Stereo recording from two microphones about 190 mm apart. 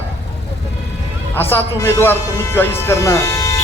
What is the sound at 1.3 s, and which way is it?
Speech, 10° left (ahead or behind).